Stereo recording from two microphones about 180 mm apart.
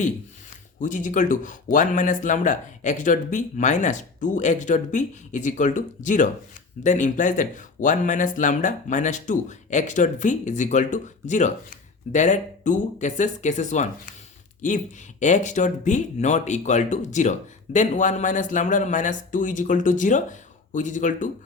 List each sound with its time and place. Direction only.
0.8 s speech: 45° left (ahead or behind)